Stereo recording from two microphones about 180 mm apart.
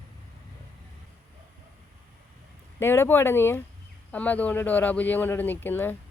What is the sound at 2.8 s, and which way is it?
A man's voice, 15° left (ahead or behind).